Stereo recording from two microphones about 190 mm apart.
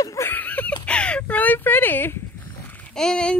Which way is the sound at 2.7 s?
5° left (ahead or behind).